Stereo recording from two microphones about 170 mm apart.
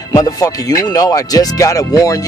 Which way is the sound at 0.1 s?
20° left (ahead or behind).